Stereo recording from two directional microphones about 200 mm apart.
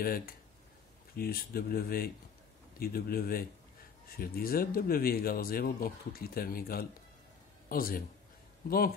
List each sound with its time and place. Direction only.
0.0 s speech: 50° left (ahead or behind)